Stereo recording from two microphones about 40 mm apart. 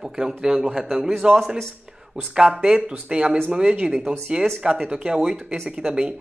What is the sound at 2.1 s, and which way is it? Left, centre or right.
Speech, centre.